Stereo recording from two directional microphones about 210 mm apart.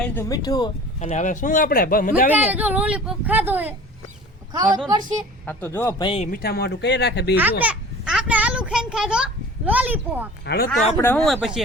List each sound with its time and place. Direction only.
0.0 s speech: 10° left (ahead or behind)
0.9 s speech: 35° left (ahead or behind)
2.3 s a woman's voice: 10° right (ahead or behind)
5.5 s speech: 10° left (ahead or behind)
6.0 s a man's voice: 25° left (ahead or behind)
6.2 s speech: 45° left (ahead or behind)
7.6 s a sound: 5° right (ahead or behind)
10.4 s speech: 50° left (ahead or behind)
10.9 s speech: 10° left (ahead or behind)
11.3 s speech: centre (ahead or behind)